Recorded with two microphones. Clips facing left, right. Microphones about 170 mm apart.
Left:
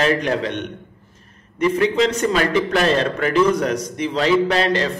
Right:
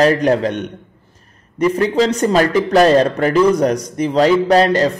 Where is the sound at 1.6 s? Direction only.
40° right (ahead or behind).